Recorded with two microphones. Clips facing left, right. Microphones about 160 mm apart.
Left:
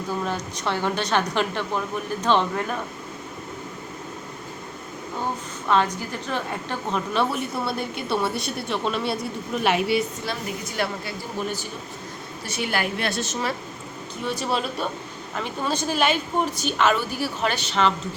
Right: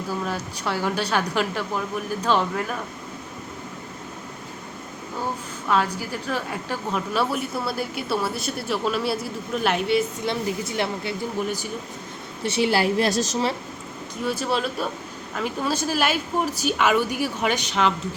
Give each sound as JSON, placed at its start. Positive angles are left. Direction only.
{"t": 0.3, "sound": "a woman's voice", "side_deg": -10}
{"t": 5.6, "sound": "a woman's voice", "side_deg": -5}
{"t": 10.2, "sound": "a woman's voice", "side_deg": -25}
{"t": 11.4, "sound": "a woman's voice", "side_deg": -15}
{"t": 12.4, "sound": "a woman's voice", "side_deg": -30}
{"t": 14.3, "sound": "a woman's voice", "side_deg": 0}